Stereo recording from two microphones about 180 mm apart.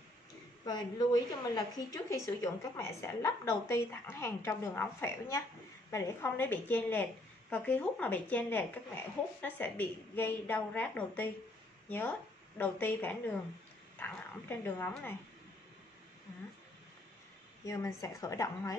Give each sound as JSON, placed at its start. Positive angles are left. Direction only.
{"t": 0.7, "sound": "a woman's voice", "side_deg": 25}
{"t": 12.5, "sound": "a woman's voice", "side_deg": 10}
{"t": 17.6, "sound": "a woman's voice", "side_deg": 15}